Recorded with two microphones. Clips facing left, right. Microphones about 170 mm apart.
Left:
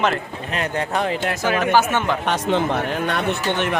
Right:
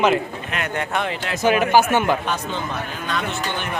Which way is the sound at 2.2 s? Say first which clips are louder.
Left 6 dB; 80° left.